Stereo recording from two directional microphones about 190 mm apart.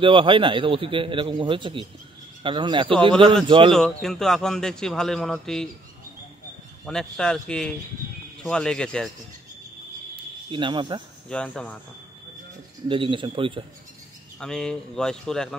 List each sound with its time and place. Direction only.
0.0 s a man's voice: 25° right (ahead or behind)
3.7 s a man's voice: centre (ahead or behind)
6.9 s a man's voice: 5° left (ahead or behind)
10.5 s a man's voice: 25° right (ahead or behind)
11.2 s a man's voice: 5° left (ahead or behind)
12.8 s a man's voice: 25° right (ahead or behind)
14.4 s a man's voice: 5° left (ahead or behind)